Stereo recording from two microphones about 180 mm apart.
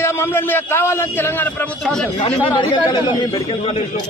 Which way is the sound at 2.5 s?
25° left (ahead or behind).